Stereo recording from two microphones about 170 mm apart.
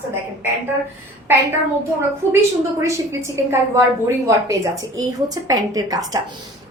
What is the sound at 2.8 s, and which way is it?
A woman's voice, 15° right (ahead or behind).